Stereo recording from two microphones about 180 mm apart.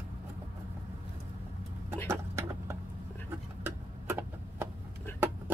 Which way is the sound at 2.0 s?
15° right (ahead or behind).